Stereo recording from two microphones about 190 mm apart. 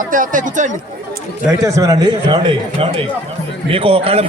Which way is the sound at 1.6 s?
15° right (ahead or behind).